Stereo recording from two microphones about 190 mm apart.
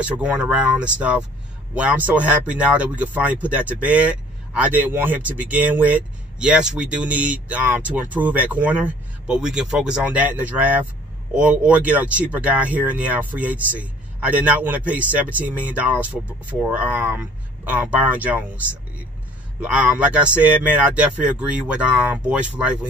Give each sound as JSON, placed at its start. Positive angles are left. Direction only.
{"t": 0.0, "sound": "speech", "side_deg": -5}